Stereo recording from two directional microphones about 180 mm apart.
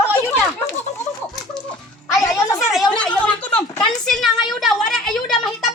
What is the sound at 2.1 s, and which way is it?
Speech, 15° left (ahead or behind).